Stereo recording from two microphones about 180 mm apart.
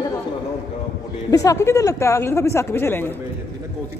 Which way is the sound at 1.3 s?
20° left (ahead or behind).